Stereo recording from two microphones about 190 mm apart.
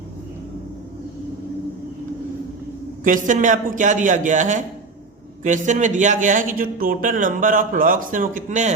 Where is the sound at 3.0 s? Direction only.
45° right (ahead or behind).